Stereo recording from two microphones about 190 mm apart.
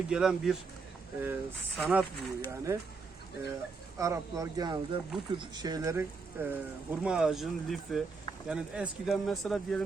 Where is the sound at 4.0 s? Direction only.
15° right (ahead or behind).